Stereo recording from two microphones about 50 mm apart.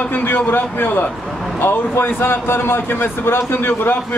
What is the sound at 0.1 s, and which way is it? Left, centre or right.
A man's voice, left.